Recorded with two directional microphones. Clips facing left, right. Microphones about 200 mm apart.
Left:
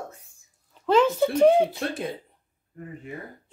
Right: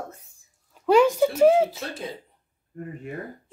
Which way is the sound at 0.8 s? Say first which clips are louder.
Right 2 dB; 10° right (ahead or behind).